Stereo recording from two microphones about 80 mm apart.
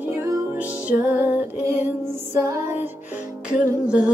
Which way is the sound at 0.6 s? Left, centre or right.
Centre.